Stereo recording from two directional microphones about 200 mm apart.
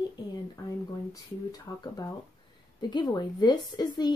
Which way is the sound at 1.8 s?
20° left (ahead or behind).